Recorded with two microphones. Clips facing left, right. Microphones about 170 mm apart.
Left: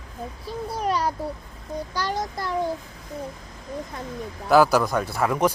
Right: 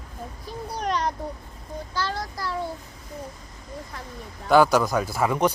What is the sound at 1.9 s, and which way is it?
Speech, 15° left (ahead or behind).